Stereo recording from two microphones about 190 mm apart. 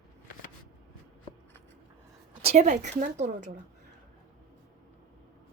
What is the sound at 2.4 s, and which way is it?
A woman's voice, 35° right (ahead or behind).